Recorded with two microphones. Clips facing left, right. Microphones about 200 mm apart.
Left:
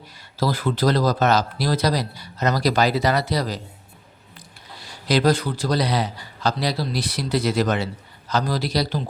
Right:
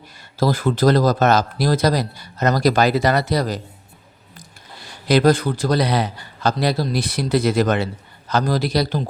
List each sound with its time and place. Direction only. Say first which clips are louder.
0.3 s speech: right 4 dB; 45° right (ahead or behind)
5.0 s speech: right 4 dB; 55° right (ahead or behind)